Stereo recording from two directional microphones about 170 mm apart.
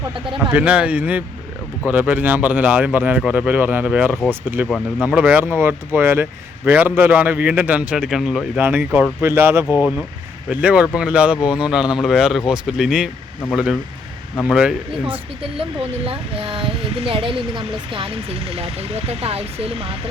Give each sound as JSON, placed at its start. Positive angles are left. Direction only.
{"t": 0.5, "sound": "a man's voice", "side_deg": -5}
{"t": 15.0, "sound": "speech", "side_deg": -30}